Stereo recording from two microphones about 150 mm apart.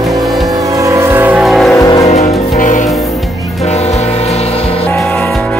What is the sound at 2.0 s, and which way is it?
Music, 50° left (ahead or behind).